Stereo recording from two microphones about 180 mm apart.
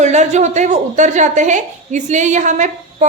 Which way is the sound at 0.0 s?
40° right (ahead or behind).